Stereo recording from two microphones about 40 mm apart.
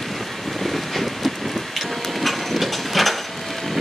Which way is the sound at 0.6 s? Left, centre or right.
Centre.